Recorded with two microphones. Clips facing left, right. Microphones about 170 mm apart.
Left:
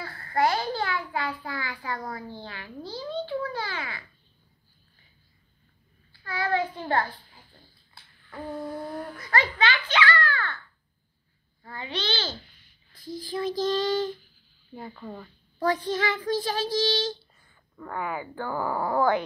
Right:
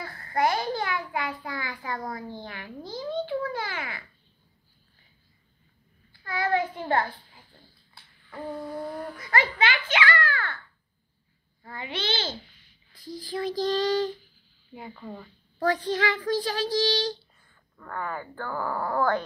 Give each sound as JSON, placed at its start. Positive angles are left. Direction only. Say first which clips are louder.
{"t": 0.0, "sound": "a child's voice", "louder": "left 1 dB", "side_deg": -20}
{"t": 6.2, "sound": "a child's voice", "louder": "right 1 dB", "side_deg": -20}
{"t": 8.3, "sound": "a sound", "louder": "even", "side_deg": 0}
{"t": 9.4, "sound": "a child's voice", "louder": "even", "side_deg": 25}
{"t": 12.1, "sound": "a child's voice", "louder": "right 2 dB", "side_deg": -25}
{"t": 13.6, "sound": "child singing", "louder": "right 1 dB", "side_deg": -40}
{"t": 14.7, "sound": "a woman's voice", "louder": "left 1 dB", "side_deg": -10}
{"t": 15.6, "sound": "child singing", "louder": "even", "side_deg": -40}
{"t": 17.7, "sound": "speech", "louder": "left 2 dB", "side_deg": 10}